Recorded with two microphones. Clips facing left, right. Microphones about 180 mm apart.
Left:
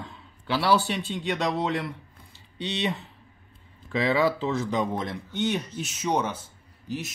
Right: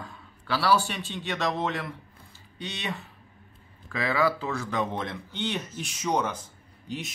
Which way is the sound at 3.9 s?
20° left (ahead or behind).